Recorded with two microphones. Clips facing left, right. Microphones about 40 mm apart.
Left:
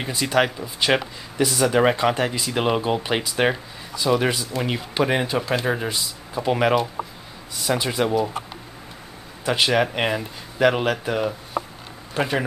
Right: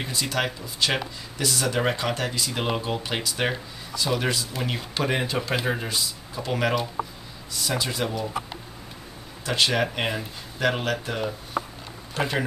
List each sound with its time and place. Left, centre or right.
0.0 s speech: left
9.4 s speech: centre